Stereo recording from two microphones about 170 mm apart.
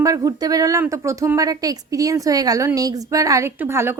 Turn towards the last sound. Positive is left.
turn(degrees=-15)  # may be behind; listen again after turning